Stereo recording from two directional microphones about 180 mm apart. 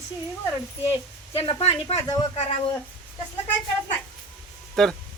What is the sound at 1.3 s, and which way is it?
Speech, 35° left (ahead or behind).